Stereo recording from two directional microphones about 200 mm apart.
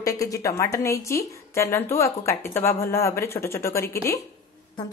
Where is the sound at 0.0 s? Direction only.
15° left (ahead or behind).